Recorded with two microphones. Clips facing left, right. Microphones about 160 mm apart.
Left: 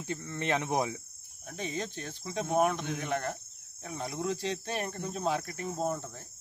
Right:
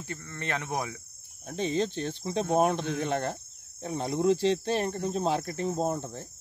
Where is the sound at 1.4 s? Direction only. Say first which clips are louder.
Right 8 dB; 30° right (ahead or behind).